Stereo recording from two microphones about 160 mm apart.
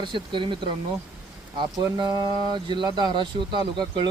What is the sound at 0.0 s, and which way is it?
Speech, 30° right (ahead or behind).